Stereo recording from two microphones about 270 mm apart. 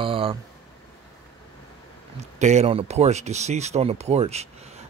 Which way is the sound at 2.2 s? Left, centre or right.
Right.